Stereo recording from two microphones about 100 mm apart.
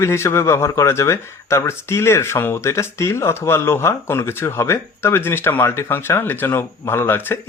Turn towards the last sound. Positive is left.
turn(degrees=25)  # may be behind; listen again after turning